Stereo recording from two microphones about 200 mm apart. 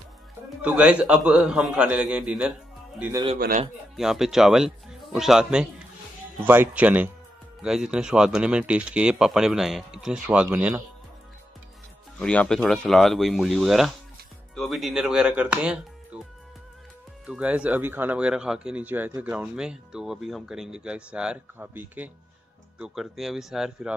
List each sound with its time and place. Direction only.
0.6 s speech: 5° right (ahead or behind)
3.3 s speech: 45° right (ahead or behind)
3.9 s speech: centre (ahead or behind)
12.2 s speech: 5° left (ahead or behind)
17.3 s speech: 5° right (ahead or behind)